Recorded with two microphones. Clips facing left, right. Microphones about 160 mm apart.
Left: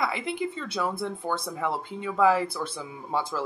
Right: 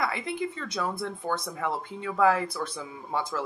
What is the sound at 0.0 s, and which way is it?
Speech, 20° left (ahead or behind).